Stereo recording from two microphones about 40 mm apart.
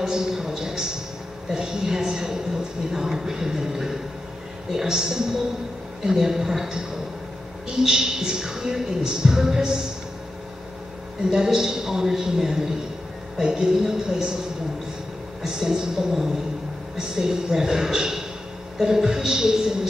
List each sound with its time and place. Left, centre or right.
0.0 s a sound: centre
1.5 s a woman's voice: centre
11.2 s a woman's voice: centre
15.4 s a woman's voice: centre